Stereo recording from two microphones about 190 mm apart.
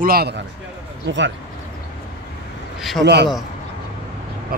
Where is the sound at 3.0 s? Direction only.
65° right (ahead or behind).